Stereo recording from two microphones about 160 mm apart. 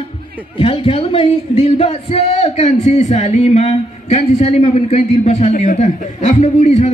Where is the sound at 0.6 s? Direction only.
35° left (ahead or behind).